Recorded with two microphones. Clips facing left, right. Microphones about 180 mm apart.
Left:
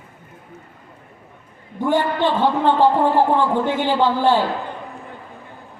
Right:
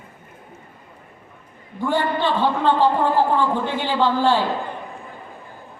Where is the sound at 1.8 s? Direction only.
15° left (ahead or behind).